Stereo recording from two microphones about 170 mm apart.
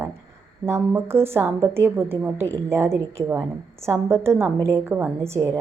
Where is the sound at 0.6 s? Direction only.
15° right (ahead or behind).